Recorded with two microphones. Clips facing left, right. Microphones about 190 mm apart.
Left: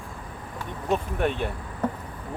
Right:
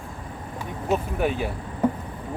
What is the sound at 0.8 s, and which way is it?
Speech, 5° right (ahead or behind).